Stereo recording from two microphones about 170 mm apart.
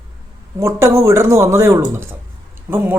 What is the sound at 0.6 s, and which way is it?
Speech, 15° right (ahead or behind).